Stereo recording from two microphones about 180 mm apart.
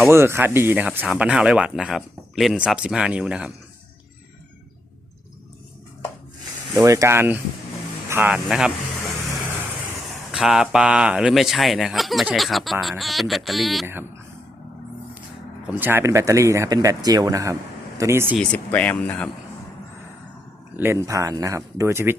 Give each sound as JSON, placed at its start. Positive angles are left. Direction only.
{"t": 0.1, "sound": "speech", "side_deg": -15}
{"t": 6.7, "sound": "speech", "side_deg": -15}
{"t": 10.1, "sound": "speech", "side_deg": 0}
{"t": 15.6, "sound": "speech", "side_deg": -10}
{"t": 18.3, "sound": "speech", "side_deg": 5}
{"t": 20.7, "sound": "speech", "side_deg": -15}